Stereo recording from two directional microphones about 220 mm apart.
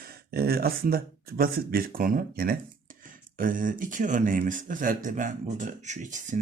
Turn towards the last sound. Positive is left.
turn(degrees=-35)  # may be behind; listen again after turning